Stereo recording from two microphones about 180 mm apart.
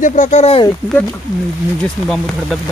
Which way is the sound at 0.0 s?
45° left (ahead or behind).